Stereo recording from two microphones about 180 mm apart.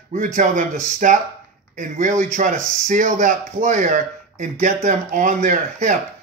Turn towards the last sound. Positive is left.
turn(degrees=-40)  # may be behind; listen again after turning